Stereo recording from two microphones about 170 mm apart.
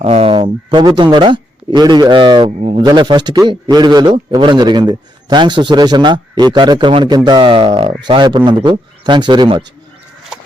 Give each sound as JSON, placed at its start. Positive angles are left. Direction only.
{"t": 0.0, "sound": "a man's voice", "side_deg": -35}